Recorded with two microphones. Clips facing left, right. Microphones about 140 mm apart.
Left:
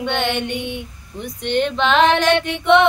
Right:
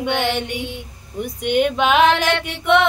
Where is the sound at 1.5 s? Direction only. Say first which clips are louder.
Right 1 dB; 10° right (ahead or behind).